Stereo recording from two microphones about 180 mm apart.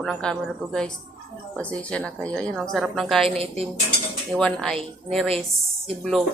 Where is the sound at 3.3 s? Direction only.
35° right (ahead or behind).